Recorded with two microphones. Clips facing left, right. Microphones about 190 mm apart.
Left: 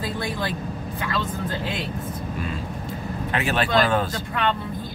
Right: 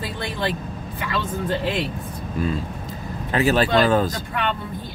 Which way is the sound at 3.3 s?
35° right (ahead or behind).